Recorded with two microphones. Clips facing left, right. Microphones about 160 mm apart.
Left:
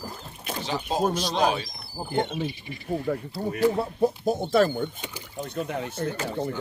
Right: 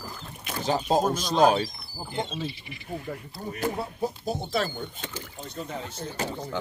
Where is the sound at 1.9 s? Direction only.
65° left (ahead or behind).